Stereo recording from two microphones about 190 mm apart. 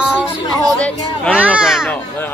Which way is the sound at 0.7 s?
5° left (ahead or behind).